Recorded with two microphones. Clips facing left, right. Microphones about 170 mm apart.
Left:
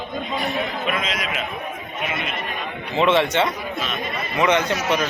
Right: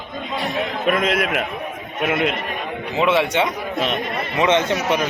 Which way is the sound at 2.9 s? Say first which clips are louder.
Even; 10° right (ahead or behind).